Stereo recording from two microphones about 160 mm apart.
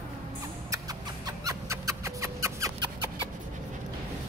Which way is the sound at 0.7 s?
20° right (ahead or behind).